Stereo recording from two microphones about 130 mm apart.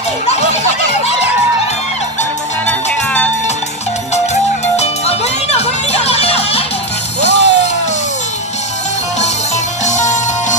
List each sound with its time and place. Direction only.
0.3 s music: 55° left (ahead or behind)
4.1 s music: 60° left (ahead or behind)
9.8 s music: 65° left (ahead or behind)